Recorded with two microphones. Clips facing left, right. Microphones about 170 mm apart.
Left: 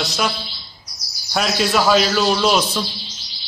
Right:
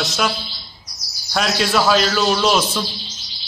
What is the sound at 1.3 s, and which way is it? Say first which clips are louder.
Speech: even; centre (ahead or behind).